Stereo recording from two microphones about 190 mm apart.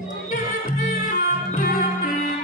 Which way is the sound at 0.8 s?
45° left (ahead or behind).